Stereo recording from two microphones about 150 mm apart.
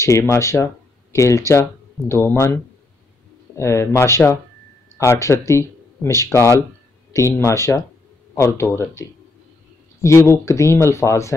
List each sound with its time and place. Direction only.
0.0 s speech: 20° left (ahead or behind)
10.0 s speech: 20° left (ahead or behind)